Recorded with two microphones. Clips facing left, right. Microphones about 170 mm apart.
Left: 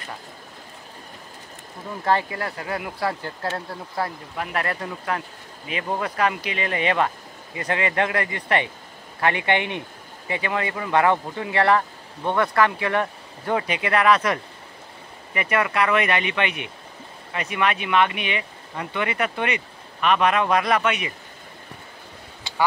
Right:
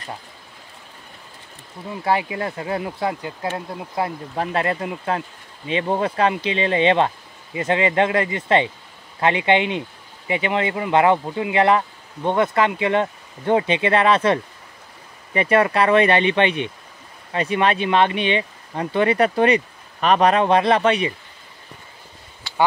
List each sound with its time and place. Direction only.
2.0 s speech: 15° right (ahead or behind); by 21.1 s 30° right (ahead or behind)